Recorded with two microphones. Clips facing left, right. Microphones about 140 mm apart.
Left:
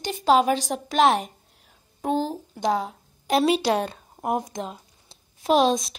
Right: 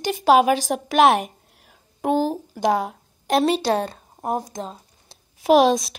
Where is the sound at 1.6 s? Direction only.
65° right (ahead or behind).